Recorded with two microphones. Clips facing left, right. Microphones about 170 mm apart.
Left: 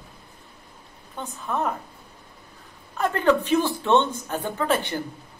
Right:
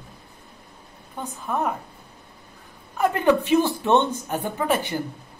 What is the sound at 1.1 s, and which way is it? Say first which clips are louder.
Speech: right 1 dB; 10° right (ahead or behind).